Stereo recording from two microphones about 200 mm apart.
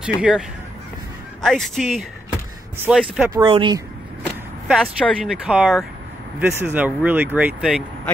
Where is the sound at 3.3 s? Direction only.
25° right (ahead or behind).